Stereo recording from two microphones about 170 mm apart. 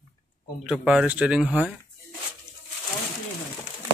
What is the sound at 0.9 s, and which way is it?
Speech, 5° right (ahead or behind).